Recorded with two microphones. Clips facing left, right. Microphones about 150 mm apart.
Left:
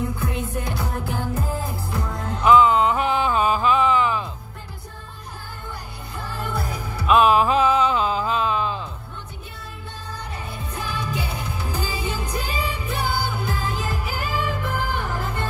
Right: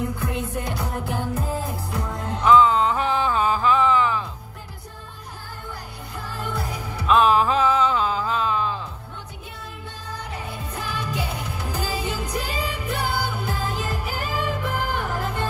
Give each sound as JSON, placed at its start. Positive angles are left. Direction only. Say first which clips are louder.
{"t": 0.0, "sound": "music", "louder": "even", "side_deg": 0}
{"t": 2.4, "sound": "a sound", "louder": "left 1 dB", "side_deg": 15}
{"t": 6.3, "sound": "music", "louder": "left 1 dB", "side_deg": 5}
{"t": 10.7, "sound": "music", "louder": "left 1 dB", "side_deg": 0}